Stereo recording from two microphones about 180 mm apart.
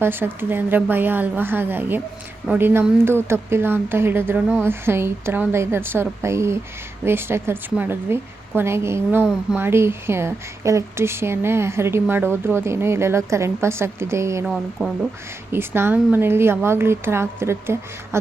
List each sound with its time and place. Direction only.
0.0 s a woman's voice: 10° right (ahead or behind)
14.4 s speech: centre (ahead or behind)
15.5 s a woman's voice: 15° right (ahead or behind)